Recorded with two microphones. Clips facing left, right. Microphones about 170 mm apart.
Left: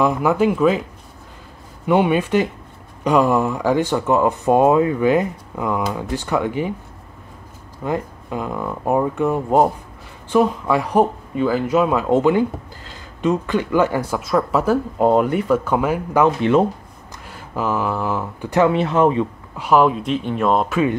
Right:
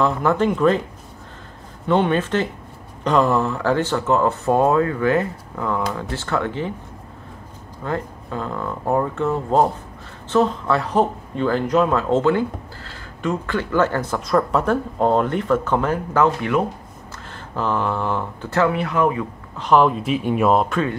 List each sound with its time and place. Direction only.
0.0 s speech: 10° left (ahead or behind)
1.9 s speech: 10° left (ahead or behind)
7.8 s speech: 15° left (ahead or behind)
18.5 s speech: 20° left (ahead or behind)
19.5 s speech: 5° left (ahead or behind)